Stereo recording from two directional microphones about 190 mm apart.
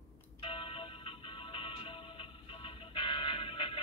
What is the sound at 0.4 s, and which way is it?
Music, 30° left (ahead or behind).